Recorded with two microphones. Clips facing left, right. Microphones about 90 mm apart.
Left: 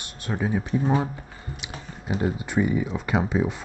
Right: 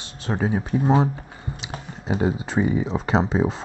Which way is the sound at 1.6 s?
25° right (ahead or behind).